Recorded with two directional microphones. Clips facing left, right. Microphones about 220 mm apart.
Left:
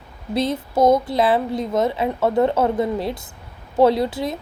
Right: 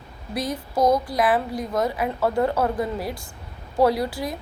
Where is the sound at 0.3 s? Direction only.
25° left (ahead or behind).